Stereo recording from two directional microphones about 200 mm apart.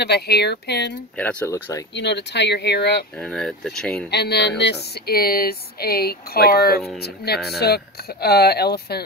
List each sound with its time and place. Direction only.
0.0 s speech: 55° left (ahead or behind)
1.1 s speech: 10° left (ahead or behind)
2.0 s speech: 60° left (ahead or behind)
3.2 s speech: 5° left (ahead or behind)
4.1 s speech: 55° left (ahead or behind)